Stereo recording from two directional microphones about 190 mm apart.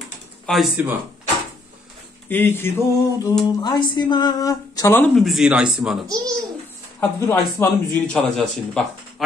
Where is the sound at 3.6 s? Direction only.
20° left (ahead or behind).